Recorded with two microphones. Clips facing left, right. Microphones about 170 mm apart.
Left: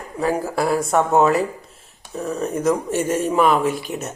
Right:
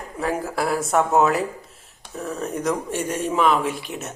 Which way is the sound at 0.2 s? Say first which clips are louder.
Left 4 dB; centre (ahead or behind).